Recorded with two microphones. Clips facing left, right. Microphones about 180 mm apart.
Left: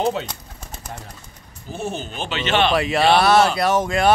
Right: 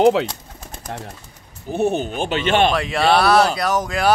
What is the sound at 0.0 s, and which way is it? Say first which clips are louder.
Speech: right 8 dB; 85° right.